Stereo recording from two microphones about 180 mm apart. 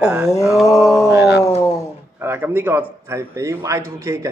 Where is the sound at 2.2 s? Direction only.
10° right (ahead or behind).